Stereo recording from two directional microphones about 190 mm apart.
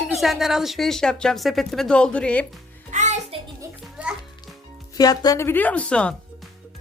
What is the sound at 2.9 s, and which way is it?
Music, 35° right (ahead or behind).